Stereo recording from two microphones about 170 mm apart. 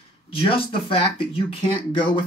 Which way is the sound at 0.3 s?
30° left (ahead or behind).